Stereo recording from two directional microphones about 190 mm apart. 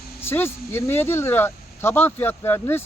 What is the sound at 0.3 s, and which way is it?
Speech, 10° left (ahead or behind).